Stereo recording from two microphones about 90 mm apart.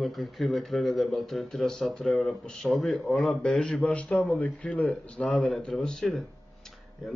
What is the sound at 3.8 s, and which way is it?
Speech, 15° left (ahead or behind).